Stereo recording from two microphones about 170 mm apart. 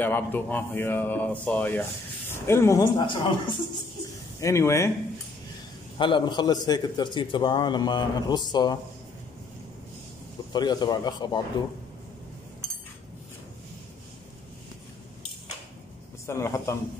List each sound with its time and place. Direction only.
0.0 s speech: 10° left (ahead or behind)
3.1 s a man's voice: 30° left (ahead or behind)
4.4 s speech: 15° left (ahead or behind)
5.9 s a man's voice: 30° left (ahead or behind)
10.5 s a man's voice: 25° left (ahead or behind)
16.3 s speech: 15° left (ahead or behind)